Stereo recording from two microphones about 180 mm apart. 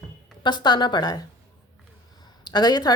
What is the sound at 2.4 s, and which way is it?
Speech, 25° left (ahead or behind).